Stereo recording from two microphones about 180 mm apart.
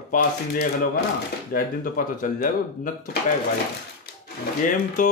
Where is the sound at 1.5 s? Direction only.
50° left (ahead or behind).